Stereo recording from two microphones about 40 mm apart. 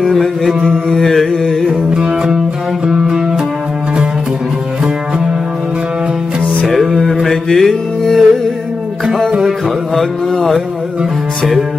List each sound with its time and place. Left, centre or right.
0.0 s mantra: centre
0.7 s music: centre
1.7 s music: centre
6.7 s music: centre
9.9 s a sound: centre